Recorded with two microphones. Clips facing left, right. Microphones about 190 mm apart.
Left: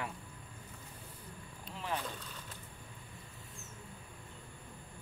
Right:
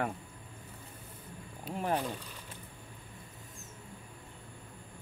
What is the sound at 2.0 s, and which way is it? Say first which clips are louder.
Speech: right 6 dB; 10° right (ahead or behind).